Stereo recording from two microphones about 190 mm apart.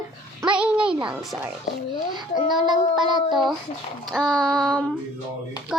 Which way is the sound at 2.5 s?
25° right (ahead or behind).